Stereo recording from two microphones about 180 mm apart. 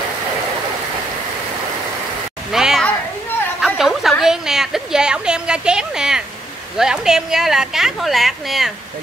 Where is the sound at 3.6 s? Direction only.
Centre (ahead or behind).